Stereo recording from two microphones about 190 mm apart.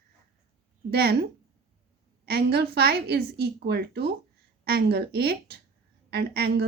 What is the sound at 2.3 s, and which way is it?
A woman's voice, 55° right (ahead or behind).